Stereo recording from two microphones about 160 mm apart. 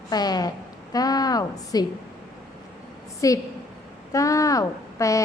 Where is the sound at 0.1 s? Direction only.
25° left (ahead or behind).